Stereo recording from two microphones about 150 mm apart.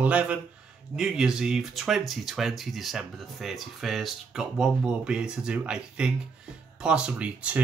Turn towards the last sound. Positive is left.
turn(degrees=-10)  # may be behind; listen again after turning